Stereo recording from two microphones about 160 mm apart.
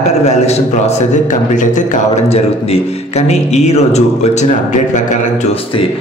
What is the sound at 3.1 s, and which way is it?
A man's voice, 45° left (ahead or behind).